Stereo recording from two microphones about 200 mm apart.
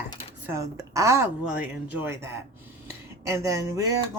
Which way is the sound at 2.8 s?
15° right (ahead or behind).